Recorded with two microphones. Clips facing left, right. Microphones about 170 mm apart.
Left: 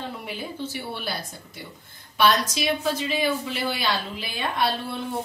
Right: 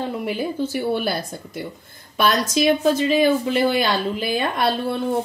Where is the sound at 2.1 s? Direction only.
45° right (ahead or behind).